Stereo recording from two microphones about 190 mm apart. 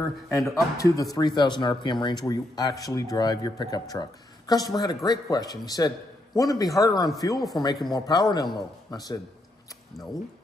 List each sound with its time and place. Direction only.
0.3 s speech: 15° left (ahead or behind)